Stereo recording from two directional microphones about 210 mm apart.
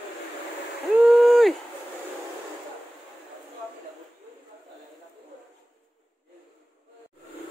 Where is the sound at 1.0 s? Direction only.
Centre (ahead or behind).